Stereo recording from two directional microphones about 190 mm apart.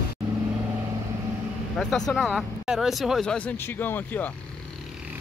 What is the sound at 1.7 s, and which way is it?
Speech, centre (ahead or behind).